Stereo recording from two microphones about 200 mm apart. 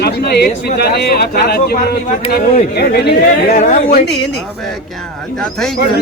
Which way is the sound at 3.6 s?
40° left (ahead or behind).